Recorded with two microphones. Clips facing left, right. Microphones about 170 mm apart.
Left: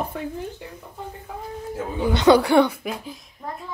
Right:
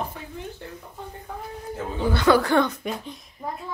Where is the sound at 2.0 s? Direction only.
20° left (ahead or behind).